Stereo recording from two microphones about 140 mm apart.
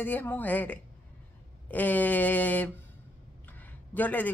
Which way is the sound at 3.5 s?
10° left (ahead or behind).